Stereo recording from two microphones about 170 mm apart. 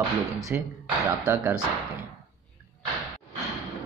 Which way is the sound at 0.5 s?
10° right (ahead or behind).